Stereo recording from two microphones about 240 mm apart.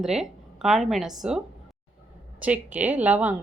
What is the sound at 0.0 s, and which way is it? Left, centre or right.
A woman's voice, centre.